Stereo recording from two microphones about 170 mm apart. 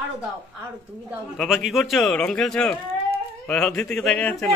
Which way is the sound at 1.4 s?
Centre (ahead or behind).